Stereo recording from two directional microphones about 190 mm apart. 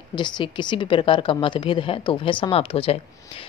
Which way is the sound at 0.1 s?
25° left (ahead or behind).